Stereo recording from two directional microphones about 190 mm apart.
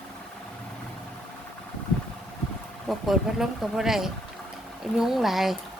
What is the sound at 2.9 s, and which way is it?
Speech, centre (ahead or behind).